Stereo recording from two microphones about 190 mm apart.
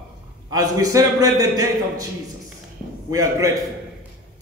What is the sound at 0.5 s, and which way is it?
A man's voice, 20° right (ahead or behind).